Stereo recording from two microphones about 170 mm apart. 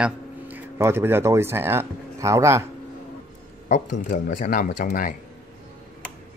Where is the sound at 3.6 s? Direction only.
45° left (ahead or behind).